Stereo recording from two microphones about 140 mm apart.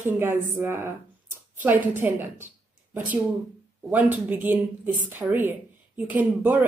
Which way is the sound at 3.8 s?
10° right (ahead or behind).